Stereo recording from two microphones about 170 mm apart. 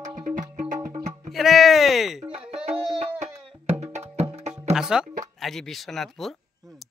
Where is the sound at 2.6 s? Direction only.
35° right (ahead or behind).